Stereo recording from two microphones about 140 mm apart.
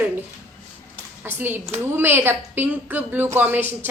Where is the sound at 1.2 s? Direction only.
15° right (ahead or behind).